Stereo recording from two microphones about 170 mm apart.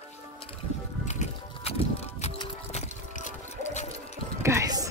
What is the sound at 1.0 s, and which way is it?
Music, 45° left (ahead or behind).